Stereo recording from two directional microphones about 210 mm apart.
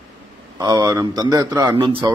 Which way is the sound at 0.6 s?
20° right (ahead or behind).